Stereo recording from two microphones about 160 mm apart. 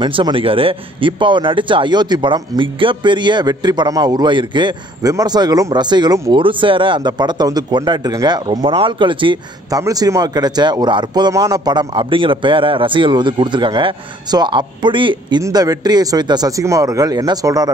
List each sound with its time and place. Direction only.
0.0 s a man's voice: 30° right (ahead or behind)